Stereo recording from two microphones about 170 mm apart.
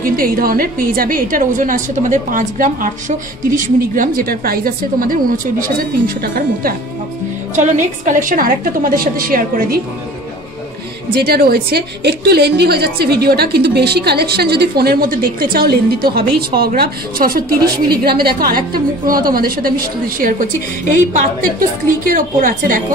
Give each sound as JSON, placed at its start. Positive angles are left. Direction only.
{"t": 0.0, "sound": "a woman's voice", "side_deg": -55}
{"t": 7.5, "sound": "a woman's voice", "side_deg": -45}
{"t": 11.1, "sound": "a woman's voice", "side_deg": -65}
{"t": 22.0, "sound": "a woman's voice", "side_deg": -55}